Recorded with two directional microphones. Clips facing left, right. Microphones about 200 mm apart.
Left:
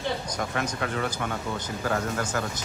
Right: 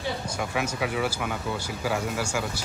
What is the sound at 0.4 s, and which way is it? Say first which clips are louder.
Speech: right 3 dB; 5° right (ahead or behind).